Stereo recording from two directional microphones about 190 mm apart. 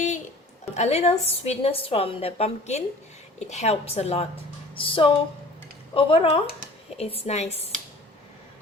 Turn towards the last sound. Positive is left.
turn(degrees=35)  # may be behind; listen again after turning